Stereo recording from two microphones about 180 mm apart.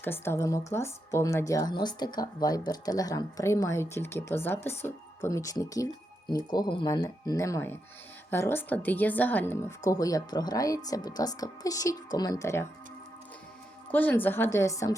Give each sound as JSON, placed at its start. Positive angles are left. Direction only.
{"t": 0.0, "sound": "a woman's voice", "side_deg": 10}
{"t": 13.9, "sound": "speech", "side_deg": 10}